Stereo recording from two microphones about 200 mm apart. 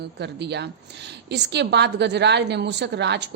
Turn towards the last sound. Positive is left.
turn(degrees=-60)  # may be behind; listen again after turning